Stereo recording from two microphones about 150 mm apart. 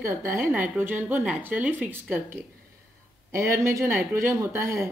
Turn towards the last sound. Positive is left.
turn(degrees=-15)  # may be behind; listen again after turning